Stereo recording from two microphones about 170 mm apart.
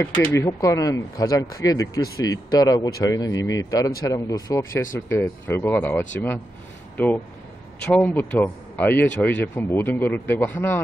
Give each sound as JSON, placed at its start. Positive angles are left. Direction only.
{"t": 0.0, "sound": "speech", "side_deg": 15}